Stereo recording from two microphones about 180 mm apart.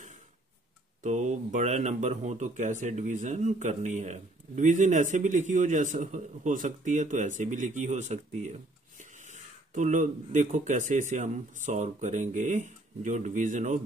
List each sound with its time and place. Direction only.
1.0 s speech: 40° right (ahead or behind)